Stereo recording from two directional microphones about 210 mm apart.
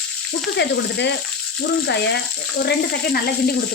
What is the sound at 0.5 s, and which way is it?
Speech, 55° left (ahead or behind).